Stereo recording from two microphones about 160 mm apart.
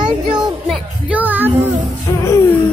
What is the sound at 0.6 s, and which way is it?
Music, centre (ahead or behind).